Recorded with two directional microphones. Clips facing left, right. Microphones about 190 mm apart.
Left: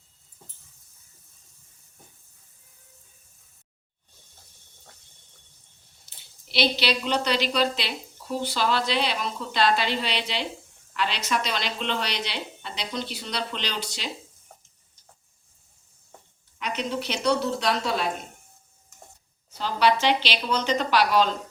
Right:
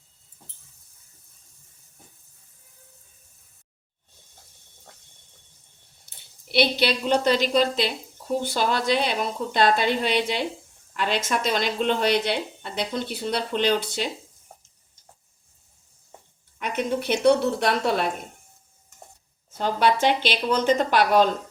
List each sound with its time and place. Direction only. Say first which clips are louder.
6.5 s speech: right 3 dB; 50° right (ahead or behind)
16.6 s speech: right 3 dB; 50° right (ahead or behind)
19.5 s speech: right 1 dB; 50° right (ahead or behind)